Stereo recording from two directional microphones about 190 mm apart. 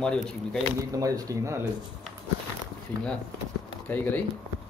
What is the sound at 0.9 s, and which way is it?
Speech, 20° right (ahead or behind).